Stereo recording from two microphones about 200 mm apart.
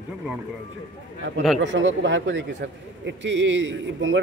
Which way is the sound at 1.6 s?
70° right (ahead or behind).